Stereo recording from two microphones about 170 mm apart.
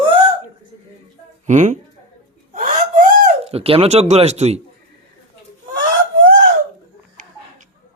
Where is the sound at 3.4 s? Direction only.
35° right (ahead or behind).